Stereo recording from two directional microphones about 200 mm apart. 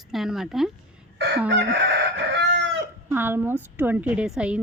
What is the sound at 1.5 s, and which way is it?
Chicken, 60° right (ahead or behind).